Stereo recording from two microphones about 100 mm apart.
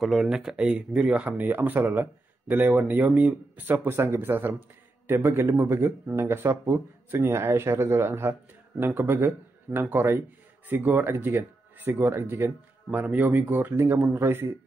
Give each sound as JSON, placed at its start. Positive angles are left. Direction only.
{"t": 0.0, "sound": "speech", "side_deg": -5}